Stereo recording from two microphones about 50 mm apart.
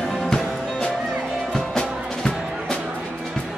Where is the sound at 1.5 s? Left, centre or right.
Centre.